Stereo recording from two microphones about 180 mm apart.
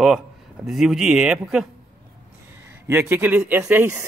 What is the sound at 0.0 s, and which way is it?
Speech, centre (ahead or behind).